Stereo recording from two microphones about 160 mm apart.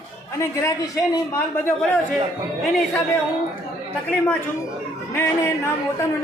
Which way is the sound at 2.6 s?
Centre (ahead or behind).